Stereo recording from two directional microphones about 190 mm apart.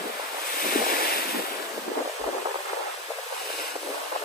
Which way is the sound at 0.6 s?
50° left (ahead or behind).